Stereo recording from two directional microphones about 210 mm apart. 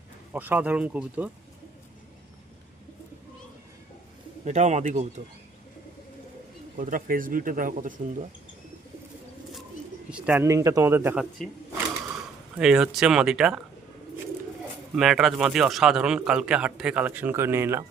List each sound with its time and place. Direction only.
0.3 s speech: 10° right (ahead or behind)
4.4 s speech: 35° right (ahead or behind)
6.7 s speech: 40° right (ahead or behind)
10.1 s speech: 5° right (ahead or behind)
12.5 s speech: 5° right (ahead or behind)
14.9 s speech: centre (ahead or behind)